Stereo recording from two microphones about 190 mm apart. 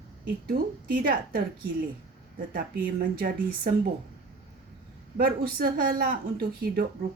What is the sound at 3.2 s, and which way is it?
Speech, 50° right (ahead or behind).